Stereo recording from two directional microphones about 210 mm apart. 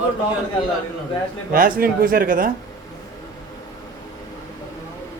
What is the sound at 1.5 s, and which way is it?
Speech, 45° right (ahead or behind).